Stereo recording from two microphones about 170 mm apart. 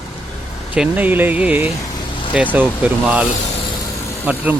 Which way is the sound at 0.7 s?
10° right (ahead or behind).